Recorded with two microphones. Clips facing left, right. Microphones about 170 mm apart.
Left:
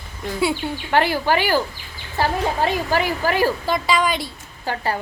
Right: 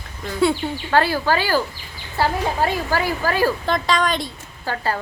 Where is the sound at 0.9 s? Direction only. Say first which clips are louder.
Even; 20° left (ahead or behind).